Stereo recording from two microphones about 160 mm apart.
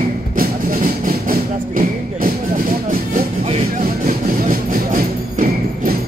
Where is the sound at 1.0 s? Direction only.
60° right (ahead or behind).